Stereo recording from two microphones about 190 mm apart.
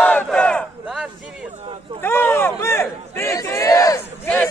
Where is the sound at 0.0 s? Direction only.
5° left (ahead or behind).